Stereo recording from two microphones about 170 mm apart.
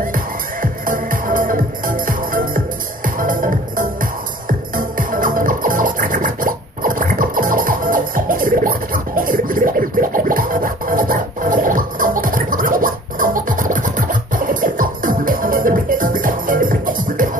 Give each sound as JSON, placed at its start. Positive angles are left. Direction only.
{"t": 0.0, "sound": "music", "side_deg": -55}